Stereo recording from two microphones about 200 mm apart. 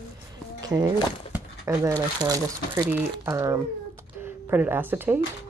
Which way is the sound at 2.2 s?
15° right (ahead or behind).